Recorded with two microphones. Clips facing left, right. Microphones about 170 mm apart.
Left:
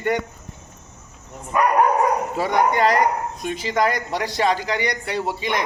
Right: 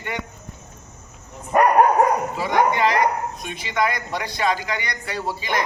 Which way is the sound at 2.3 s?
50° left (ahead or behind).